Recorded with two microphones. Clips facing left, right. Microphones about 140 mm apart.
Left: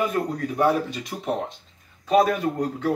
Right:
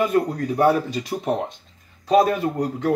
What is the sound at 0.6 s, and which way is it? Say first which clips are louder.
Speech: right 3 dB; 35° right (ahead or behind).